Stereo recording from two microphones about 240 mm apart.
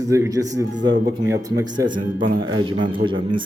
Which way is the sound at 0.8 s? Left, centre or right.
Right.